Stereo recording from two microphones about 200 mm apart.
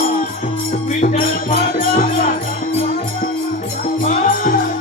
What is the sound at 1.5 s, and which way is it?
Music, 45° left (ahead or behind).